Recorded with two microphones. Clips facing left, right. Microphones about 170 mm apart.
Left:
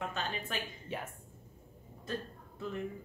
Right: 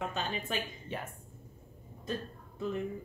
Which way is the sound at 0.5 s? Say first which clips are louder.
Right 6 dB; 20° right (ahead or behind).